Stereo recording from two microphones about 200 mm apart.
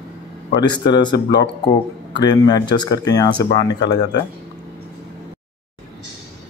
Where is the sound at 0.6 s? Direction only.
20° left (ahead or behind).